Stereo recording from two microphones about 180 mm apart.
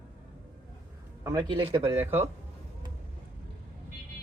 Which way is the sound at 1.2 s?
25° right (ahead or behind).